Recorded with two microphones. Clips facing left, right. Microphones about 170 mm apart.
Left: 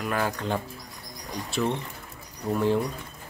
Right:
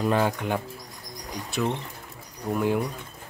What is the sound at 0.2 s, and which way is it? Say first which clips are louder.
Speech: right 3 dB; 15° right (ahead or behind).